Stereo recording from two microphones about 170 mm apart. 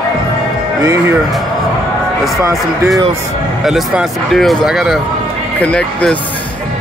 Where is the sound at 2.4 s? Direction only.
20° right (ahead or behind).